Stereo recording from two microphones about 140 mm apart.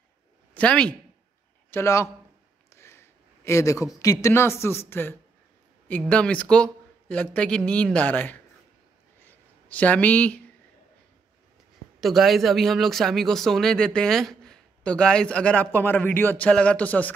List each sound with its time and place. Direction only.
0.6 s speech: 10° left (ahead or behind)
1.7 s speech: 20° left (ahead or behind)
9.2 s a sound: 10° left (ahead or behind)
12.0 s speech: centre (ahead or behind)